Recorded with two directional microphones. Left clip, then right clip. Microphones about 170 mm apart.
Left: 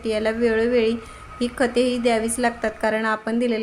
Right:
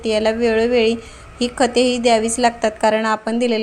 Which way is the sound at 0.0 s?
5° right (ahead or behind).